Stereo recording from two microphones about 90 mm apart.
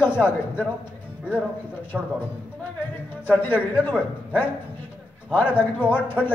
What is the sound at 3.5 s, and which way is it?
Speech, 15° right (ahead or behind).